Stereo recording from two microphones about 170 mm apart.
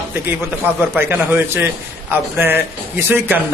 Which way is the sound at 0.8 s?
10° right (ahead or behind).